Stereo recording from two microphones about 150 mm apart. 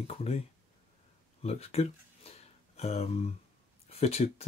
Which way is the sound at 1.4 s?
45° left (ahead or behind).